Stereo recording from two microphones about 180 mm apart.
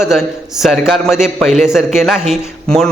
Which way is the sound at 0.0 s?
Centre (ahead or behind).